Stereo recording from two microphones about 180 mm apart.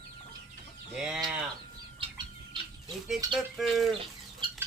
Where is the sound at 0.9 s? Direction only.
5° right (ahead or behind).